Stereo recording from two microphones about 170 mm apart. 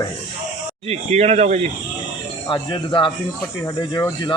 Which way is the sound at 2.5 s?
30° left (ahead or behind).